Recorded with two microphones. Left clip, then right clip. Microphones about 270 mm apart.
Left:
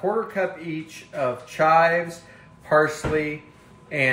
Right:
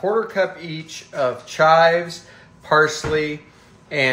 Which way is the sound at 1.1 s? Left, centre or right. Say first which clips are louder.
Right 4 dB; centre.